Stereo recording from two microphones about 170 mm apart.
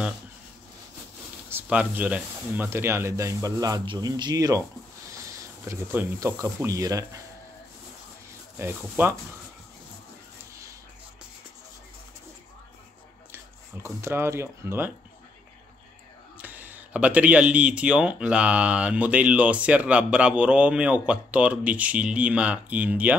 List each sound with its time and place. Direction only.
1.5 s speech: 10° right (ahead or behind)
8.5 s speech: 15° right (ahead or behind)
13.8 s speech: 15° right (ahead or behind)
16.3 s speech: 10° right (ahead or behind)